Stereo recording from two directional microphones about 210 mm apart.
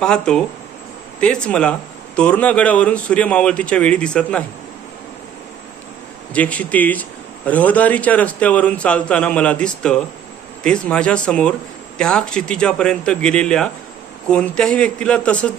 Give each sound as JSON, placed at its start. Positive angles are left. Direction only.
{"t": 0.0, "sound": "speech", "side_deg": 5}
{"t": 6.3, "sound": "a man's voice", "side_deg": 5}